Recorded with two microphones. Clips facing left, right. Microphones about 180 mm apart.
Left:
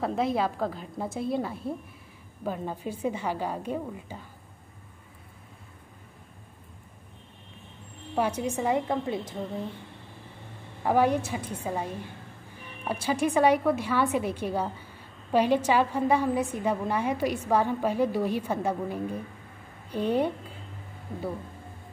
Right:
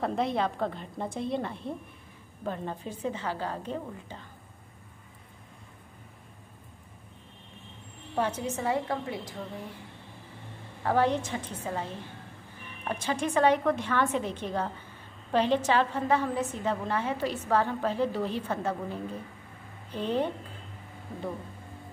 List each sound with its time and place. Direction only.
0.0 s a woman's voice: 5° left (ahead or behind)
8.2 s a woman's voice: 10° left (ahead or behind)
10.8 s a woman's voice: 10° left (ahead or behind)